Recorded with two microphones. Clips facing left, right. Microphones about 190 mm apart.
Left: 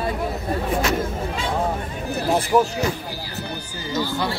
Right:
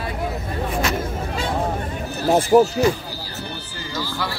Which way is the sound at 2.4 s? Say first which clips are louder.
Right 5 dB; 35° right (ahead or behind).